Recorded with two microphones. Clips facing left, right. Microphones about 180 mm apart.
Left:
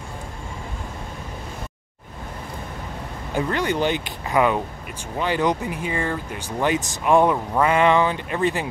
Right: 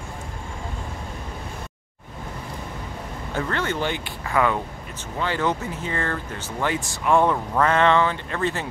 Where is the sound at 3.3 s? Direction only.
15° left (ahead or behind).